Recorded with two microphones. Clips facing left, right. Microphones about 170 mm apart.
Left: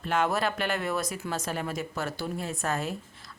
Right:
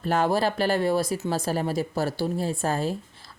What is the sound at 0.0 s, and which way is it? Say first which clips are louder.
Speech: right 4 dB; 35° right (ahead or behind).